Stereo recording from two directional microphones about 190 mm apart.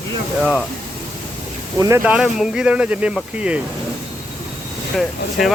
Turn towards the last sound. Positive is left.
turn(degrees=0)  # may be behind; listen again after turning